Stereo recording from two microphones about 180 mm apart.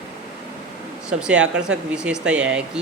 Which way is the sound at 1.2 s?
5° right (ahead or behind).